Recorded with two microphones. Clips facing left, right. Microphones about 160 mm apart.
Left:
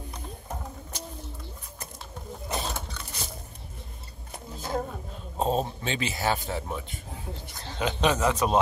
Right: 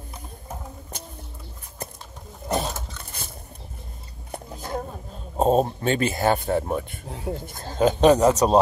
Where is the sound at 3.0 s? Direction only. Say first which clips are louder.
Left 1 dB; 50° right (ahead or behind).